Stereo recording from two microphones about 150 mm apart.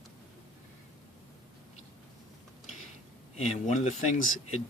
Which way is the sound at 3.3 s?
50° left (ahead or behind).